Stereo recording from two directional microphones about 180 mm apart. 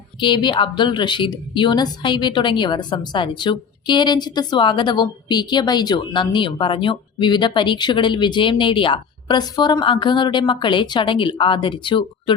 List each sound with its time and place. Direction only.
0.2 s a woman's voice: 25° left (ahead or behind)